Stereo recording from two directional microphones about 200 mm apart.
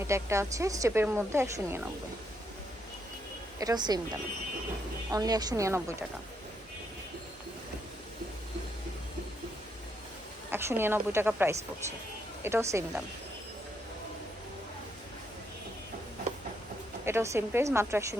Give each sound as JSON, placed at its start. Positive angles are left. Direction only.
{"t": 0.1, "sound": "a woman's voice", "side_deg": -15}
{"t": 3.6, "sound": "speech", "side_deg": -20}
{"t": 5.1, "sound": "a woman's voice", "side_deg": -20}
{"t": 10.5, "sound": "a woman's voice", "side_deg": -10}
{"t": 17.1, "sound": "a woman's voice", "side_deg": -15}